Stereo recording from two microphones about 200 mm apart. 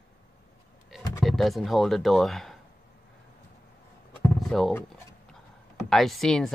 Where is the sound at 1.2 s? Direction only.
Centre (ahead or behind).